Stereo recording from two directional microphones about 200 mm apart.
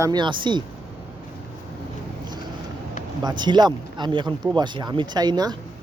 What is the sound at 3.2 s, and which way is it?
Speech, 20° right (ahead or behind).